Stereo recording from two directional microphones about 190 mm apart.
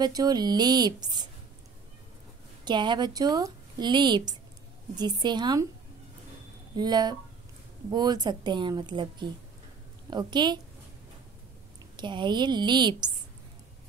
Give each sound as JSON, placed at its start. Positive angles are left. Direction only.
{"t": 0.0, "sound": "speech", "side_deg": -20}
{"t": 2.6, "sound": "a woman's voice", "side_deg": -25}
{"t": 6.7, "sound": "speech", "side_deg": -20}
{"t": 12.0, "sound": "speech", "side_deg": -25}